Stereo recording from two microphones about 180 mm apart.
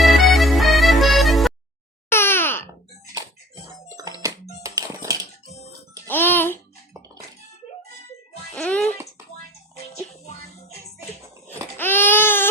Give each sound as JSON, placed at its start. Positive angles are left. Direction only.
{"t": 0.0, "sound": "music", "side_deg": 0}
{"t": 2.0, "sound": "wail", "side_deg": 15}
{"t": 3.8, "sound": "music", "side_deg": -20}
{"t": 6.1, "sound": "music", "side_deg": 10}
{"t": 8.5, "sound": "music", "side_deg": 5}
{"t": 11.8, "sound": "baby cry", "side_deg": 10}